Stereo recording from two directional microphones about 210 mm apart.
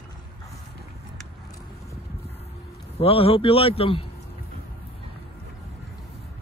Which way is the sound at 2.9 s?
25° left (ahead or behind).